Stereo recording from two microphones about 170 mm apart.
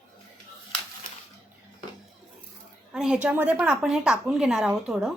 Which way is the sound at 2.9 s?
5° right (ahead or behind).